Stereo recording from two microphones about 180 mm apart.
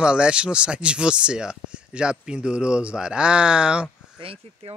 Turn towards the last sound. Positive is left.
turn(degrees=-30)  # may be behind; listen again after turning